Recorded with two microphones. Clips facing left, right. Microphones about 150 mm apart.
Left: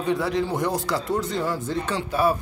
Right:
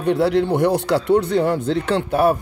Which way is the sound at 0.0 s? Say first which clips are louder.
Right 6 dB; 65° right (ahead or behind).